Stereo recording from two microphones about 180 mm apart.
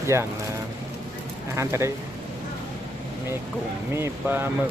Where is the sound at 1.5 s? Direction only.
15° right (ahead or behind).